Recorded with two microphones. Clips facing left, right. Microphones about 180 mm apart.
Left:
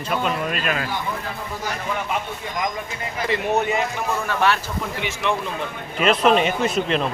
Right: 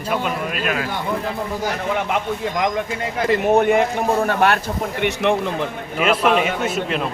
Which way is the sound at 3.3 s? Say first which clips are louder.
Right 6 dB; 55° right (ahead or behind).